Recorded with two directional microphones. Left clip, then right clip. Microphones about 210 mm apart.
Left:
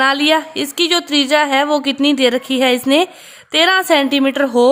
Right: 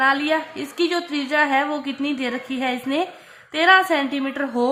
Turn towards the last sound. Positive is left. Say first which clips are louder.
# left 10 dB
turn(degrees=50)  # may be behind; listen again after turning